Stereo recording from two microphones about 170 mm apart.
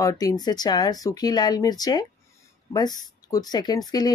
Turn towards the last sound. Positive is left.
turn(degrees=25)  # may be behind; listen again after turning